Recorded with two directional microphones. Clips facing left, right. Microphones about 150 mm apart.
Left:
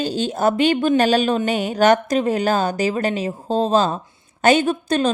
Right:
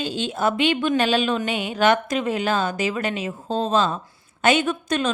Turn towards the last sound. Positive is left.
turn(degrees=35)  # may be behind; listen again after turning